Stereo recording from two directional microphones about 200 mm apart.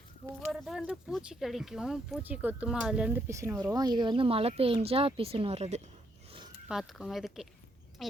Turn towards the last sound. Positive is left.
turn(degrees=0)  # may be behind; listen again after turning